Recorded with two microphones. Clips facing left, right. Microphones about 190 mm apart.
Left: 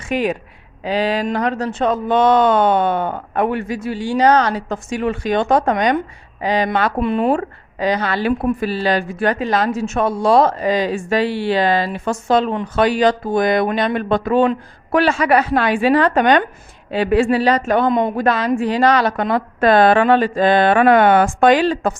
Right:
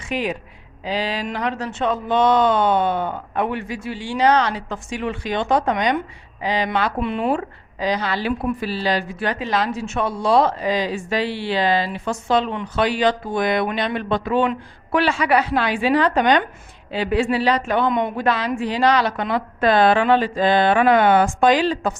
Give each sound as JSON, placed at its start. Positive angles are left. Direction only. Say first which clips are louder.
{"t": 0.0, "sound": "a woman's voice", "louder": "left 5 dB", "side_deg": 50}